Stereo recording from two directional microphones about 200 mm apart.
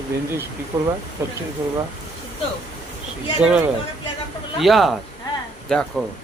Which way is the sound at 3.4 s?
5° right (ahead or behind).